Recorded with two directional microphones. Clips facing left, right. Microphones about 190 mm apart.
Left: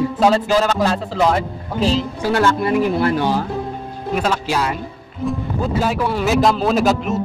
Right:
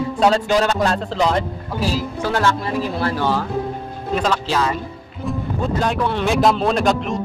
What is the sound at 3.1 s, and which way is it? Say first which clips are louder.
Speech: left 1 dB; 15° left (ahead or behind).